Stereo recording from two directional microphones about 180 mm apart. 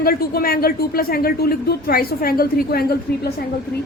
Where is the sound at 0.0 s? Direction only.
55° left (ahead or behind).